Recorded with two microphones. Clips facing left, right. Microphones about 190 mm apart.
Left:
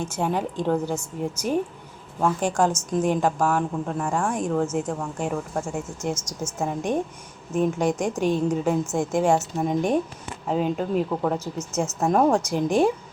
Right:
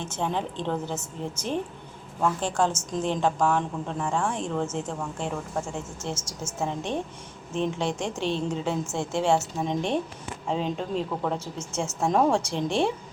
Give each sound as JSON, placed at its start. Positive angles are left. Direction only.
{"t": 0.0, "sound": "a woman's voice", "side_deg": 10}
{"t": 11.3, "sound": "speech", "side_deg": -30}
{"t": 11.8, "sound": "a woman's voice", "side_deg": 5}